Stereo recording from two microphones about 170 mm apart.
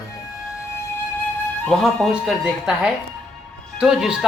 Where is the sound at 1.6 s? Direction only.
5° left (ahead or behind).